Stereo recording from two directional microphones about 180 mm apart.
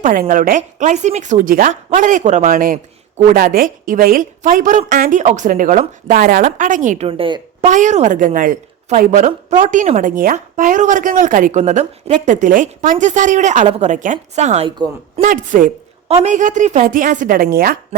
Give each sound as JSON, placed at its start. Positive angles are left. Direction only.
{"t": 0.0, "sound": "a woman's voice", "side_deg": -50}
{"t": 7.1, "sound": "speech", "side_deg": -30}
{"t": 7.6, "sound": "a woman's voice", "side_deg": -40}
{"t": 15.2, "sound": "a woman's voice", "side_deg": -50}